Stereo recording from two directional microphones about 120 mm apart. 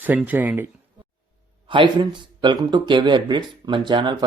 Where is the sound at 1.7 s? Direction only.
40° right (ahead or behind).